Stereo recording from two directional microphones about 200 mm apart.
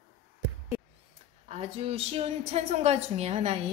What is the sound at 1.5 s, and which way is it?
A woman's voice, 30° right (ahead or behind).